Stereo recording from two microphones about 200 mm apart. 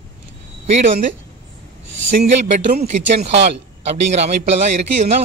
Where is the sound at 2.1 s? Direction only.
40° right (ahead or behind).